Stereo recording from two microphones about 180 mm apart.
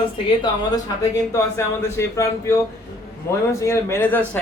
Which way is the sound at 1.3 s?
15° left (ahead or behind).